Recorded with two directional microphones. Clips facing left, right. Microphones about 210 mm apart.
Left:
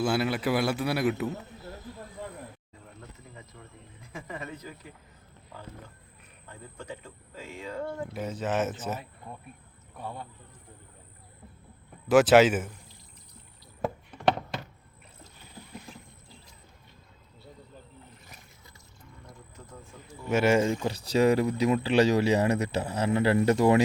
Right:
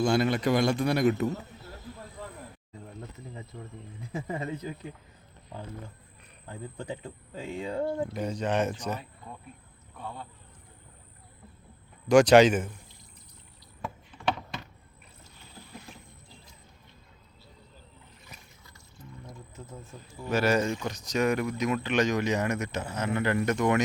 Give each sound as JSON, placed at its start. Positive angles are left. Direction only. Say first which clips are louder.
{"t": 0.0, "sound": "a man's voice", "louder": "right 2 dB", "side_deg": 5}
{"t": 3.5, "sound": "speech", "louder": "right 7 dB", "side_deg": -30}
{"t": 6.5, "sound": "speech", "louder": "right 5 dB", "side_deg": -30}
{"t": 8.1, "sound": "a man's voice", "louder": "right 1 dB", "side_deg": 5}
{"t": 12.0, "sound": "a man's voice", "louder": "right 1 dB", "side_deg": 5}
{"t": 13.8, "sound": "a sound", "louder": "left 5 dB", "side_deg": 45}
{"t": 19.5, "sound": "speech", "louder": "right 3 dB", "side_deg": -20}
{"t": 20.3, "sound": "speech", "louder": "left 2 dB", "side_deg": 25}